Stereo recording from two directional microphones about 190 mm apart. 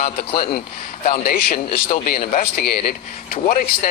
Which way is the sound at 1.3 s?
50° left (ahead or behind).